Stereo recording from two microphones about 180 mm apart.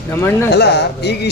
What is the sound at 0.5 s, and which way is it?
Speech, 70° left (ahead or behind).